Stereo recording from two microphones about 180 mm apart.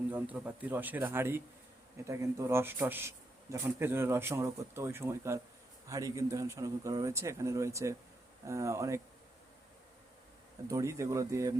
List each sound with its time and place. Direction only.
0.1 s speech: 10° right (ahead or behind)
10.7 s speech: 15° right (ahead or behind)